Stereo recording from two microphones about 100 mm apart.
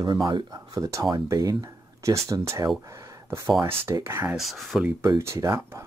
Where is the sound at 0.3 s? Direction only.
45° right (ahead or behind); by 4.4 s 25° right (ahead or behind).